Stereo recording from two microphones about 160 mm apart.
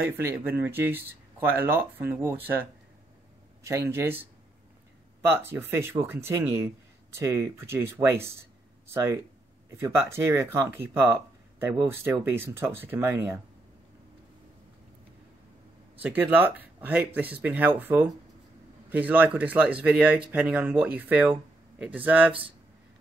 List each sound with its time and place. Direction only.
0.4 s speech: 10° right (ahead or behind)
3.6 s speech: 15° right (ahead or behind)
5.2 s speech: 15° right (ahead or behind)
16.0 s speech: 10° right (ahead or behind)